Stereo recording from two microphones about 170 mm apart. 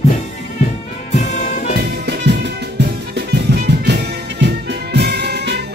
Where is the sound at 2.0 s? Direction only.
85° right.